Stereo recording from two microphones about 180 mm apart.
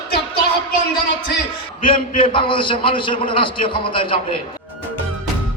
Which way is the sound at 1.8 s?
30° left (ahead or behind).